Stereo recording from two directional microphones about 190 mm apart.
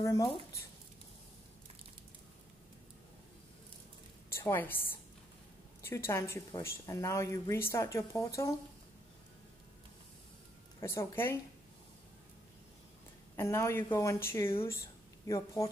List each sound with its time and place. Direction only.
0.0 s a woman's voice: 15° left (ahead or behind)
4.3 s a woman's voice: 15° left (ahead or behind)
5.8 s a woman's voice: 15° left (ahead or behind)
10.8 s a woman's voice: 15° left (ahead or behind)
13.4 s a woman's voice: 15° left (ahead or behind)